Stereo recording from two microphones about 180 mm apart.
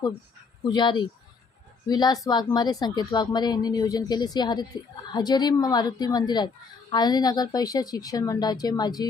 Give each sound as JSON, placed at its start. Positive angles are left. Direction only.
{"t": 0.6, "sound": "speech", "side_deg": 25}